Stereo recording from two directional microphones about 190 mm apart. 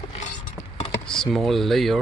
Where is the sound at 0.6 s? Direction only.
Centre (ahead or behind).